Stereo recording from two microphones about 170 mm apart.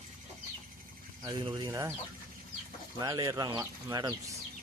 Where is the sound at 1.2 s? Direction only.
25° right (ahead or behind).